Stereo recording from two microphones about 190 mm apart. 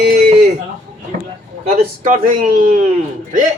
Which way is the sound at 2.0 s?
40° right (ahead or behind).